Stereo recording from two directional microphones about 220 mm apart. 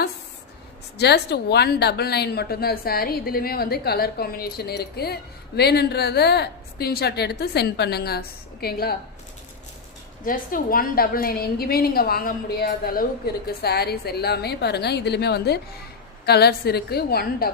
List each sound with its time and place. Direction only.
0.9 s speech: 50° left (ahead or behind)
10.2 s a woman's voice: 40° left (ahead or behind)